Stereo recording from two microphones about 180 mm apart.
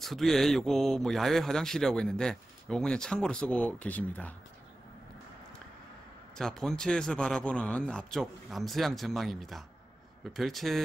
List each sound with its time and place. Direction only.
0.0 s speech: centre (ahead or behind)
6.3 s speech: centre (ahead or behind)